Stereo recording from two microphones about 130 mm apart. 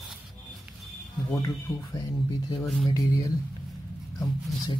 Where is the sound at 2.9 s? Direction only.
30° left (ahead or behind).